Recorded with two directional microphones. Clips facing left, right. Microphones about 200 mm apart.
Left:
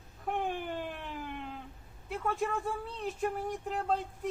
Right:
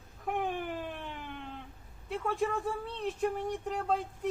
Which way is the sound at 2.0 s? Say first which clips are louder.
Right 1 dB; centre (ahead or behind).